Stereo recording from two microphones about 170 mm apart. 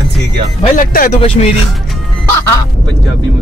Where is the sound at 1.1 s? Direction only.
40° left (ahead or behind).